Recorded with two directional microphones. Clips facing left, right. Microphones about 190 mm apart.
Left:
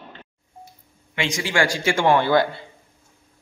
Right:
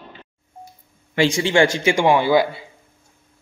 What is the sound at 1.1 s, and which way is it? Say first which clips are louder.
A man's voice: right 6 dB; 30° right (ahead or behind).